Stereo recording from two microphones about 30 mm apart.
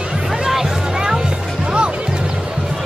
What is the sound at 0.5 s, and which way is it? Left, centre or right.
Music, centre.